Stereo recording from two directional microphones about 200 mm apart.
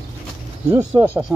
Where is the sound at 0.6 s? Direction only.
15° right (ahead or behind).